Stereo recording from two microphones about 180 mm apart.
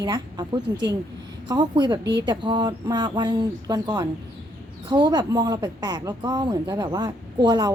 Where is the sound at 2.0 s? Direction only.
70° right (ahead or behind).